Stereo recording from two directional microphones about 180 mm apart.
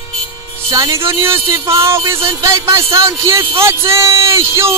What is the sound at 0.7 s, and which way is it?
Speech, 15° right (ahead or behind).